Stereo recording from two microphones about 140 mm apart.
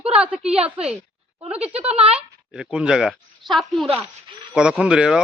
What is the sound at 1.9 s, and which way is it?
Speech, 45° right (ahead or behind).